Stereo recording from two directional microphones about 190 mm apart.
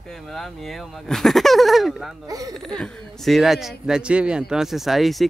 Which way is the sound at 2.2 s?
20° right (ahead or behind).